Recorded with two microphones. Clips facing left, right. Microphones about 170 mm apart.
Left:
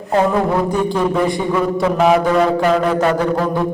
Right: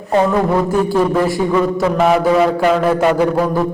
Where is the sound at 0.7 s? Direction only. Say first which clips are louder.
Right 3 dB; 5° right (ahead or behind).